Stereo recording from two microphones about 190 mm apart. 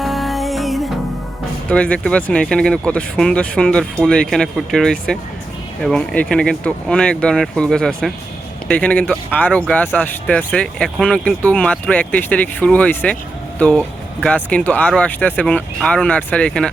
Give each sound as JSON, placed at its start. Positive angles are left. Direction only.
{"t": 0.0, "sound": "music", "side_deg": 0}
{"t": 1.7, "sound": "speech", "side_deg": 5}